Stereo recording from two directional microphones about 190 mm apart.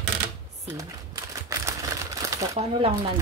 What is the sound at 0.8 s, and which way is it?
Typewriter, 15° right (ahead or behind).